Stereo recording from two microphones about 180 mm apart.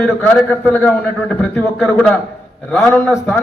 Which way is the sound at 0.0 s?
5° left (ahead or behind).